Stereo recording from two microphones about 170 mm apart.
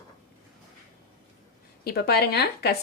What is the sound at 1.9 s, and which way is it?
Speech, 65° left (ahead or behind).